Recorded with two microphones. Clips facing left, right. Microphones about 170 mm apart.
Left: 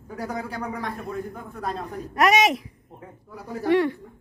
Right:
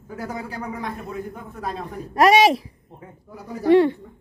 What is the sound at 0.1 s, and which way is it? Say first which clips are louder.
A man's voice: even; 5° right (ahead or behind).